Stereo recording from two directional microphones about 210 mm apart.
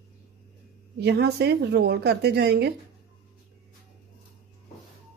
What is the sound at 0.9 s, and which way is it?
A woman's voice, 50° right (ahead or behind).